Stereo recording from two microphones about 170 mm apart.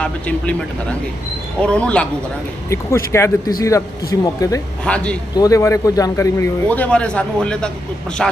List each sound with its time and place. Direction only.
0.0 s speech: 5° left (ahead or behind)
4.9 s speech: 5° left (ahead or behind)
5.4 s speech: 20° left (ahead or behind)
6.7 s speech: 10° left (ahead or behind)